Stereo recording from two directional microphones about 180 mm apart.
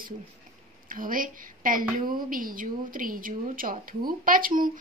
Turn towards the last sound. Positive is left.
turn(degrees=-50)  # may be behind; listen again after turning